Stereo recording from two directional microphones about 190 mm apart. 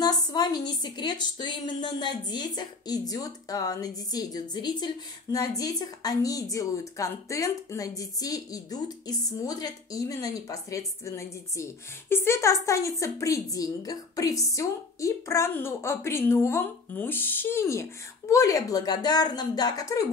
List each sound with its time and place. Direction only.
0.0 s a woman's voice: 20° left (ahead or behind)